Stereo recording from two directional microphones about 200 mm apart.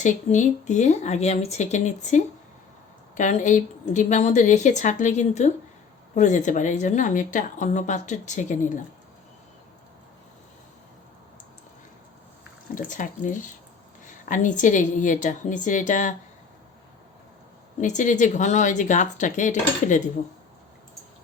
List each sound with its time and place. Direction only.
0.0 s a woman's voice: 35° left (ahead or behind)
12.7 s a woman's voice: 40° left (ahead or behind)
17.7 s a woman's voice: 40° left (ahead or behind)